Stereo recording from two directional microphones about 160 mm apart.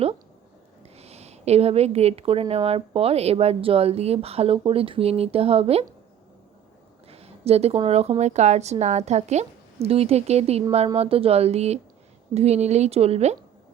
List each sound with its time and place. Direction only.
0.8 s a woman's voice: 40° right (ahead or behind)
7.1 s a sound: 40° right (ahead or behind)
7.9 s a woman's voice: 40° right (ahead or behind)